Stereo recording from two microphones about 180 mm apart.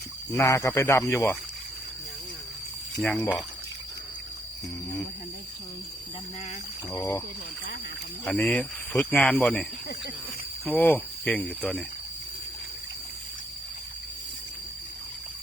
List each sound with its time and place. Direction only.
0.3 s speech: 15° left (ahead or behind)
3.0 s speech: 5° left (ahead or behind)
6.9 s speech: 20° left (ahead or behind)
8.2 s speech: 5° left (ahead or behind)
10.7 s speech: 10° left (ahead or behind)